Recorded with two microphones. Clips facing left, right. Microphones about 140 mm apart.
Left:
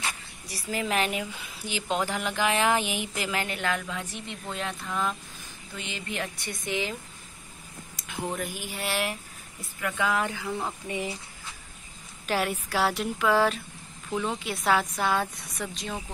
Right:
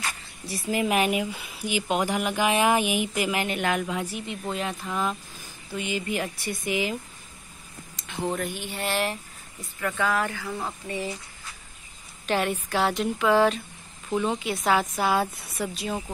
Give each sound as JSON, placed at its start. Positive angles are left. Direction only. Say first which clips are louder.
{"t": 0.5, "sound": "a woman's voice", "louder": "right 5 dB", "side_deg": -20}
{"t": 8.1, "sound": "a woman's voice", "louder": "right 4 dB", "side_deg": 5}
{"t": 12.3, "sound": "a woman's voice", "louder": "right 2 dB", "side_deg": 5}